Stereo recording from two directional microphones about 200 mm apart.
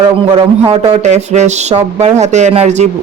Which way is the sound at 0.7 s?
35° right (ahead or behind).